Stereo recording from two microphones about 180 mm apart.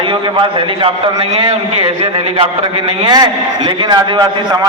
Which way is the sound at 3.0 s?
25° right (ahead or behind).